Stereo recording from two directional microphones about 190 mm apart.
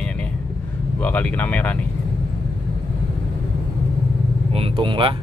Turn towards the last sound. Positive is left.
turn(degrees=-25)  # may be behind; listen again after turning